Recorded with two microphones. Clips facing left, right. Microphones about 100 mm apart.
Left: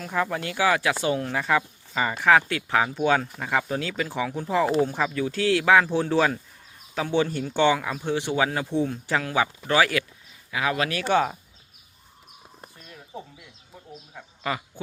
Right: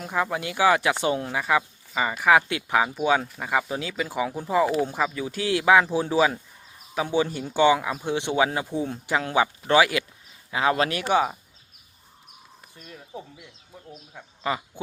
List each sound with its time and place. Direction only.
0.0 s speech: 15° right (ahead or behind)
1.4 s speech: 10° right (ahead or behind)
10.5 s speech: 30° right (ahead or behind)
11.1 s speech: 10° right (ahead or behind)
13.1 s speech: 10° right (ahead or behind)